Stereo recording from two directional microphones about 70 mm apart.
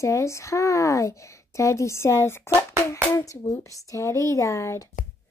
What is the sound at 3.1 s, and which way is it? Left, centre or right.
Speech, left.